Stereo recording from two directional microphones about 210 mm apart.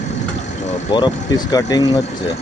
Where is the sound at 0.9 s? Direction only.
20° left (ahead or behind).